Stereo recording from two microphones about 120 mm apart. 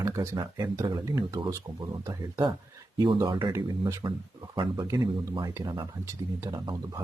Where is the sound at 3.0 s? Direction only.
35° right (ahead or behind).